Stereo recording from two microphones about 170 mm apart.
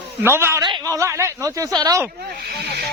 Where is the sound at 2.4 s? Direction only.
70° right (ahead or behind).